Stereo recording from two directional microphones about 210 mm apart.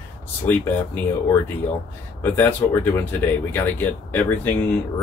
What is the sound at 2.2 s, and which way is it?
Speech, 10° left (ahead or behind).